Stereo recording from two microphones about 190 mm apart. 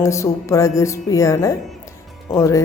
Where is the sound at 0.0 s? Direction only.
15° left (ahead or behind).